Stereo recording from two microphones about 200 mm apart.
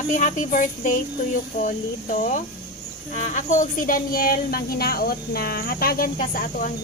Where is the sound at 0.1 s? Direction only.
40° left (ahead or behind).